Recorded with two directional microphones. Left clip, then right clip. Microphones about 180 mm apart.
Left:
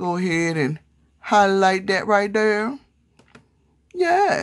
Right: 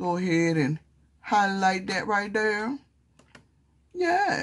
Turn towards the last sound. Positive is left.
turn(degrees=30)  # may be behind; listen again after turning